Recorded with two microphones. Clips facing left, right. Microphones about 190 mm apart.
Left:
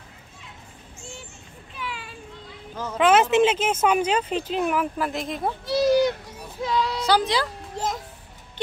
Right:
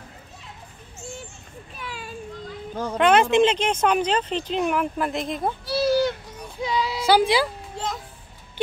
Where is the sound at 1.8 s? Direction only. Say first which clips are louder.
Left 1 dB; 40° right (ahead or behind).